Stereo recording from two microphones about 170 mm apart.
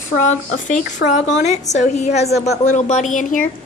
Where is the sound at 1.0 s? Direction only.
70° left (ahead or behind).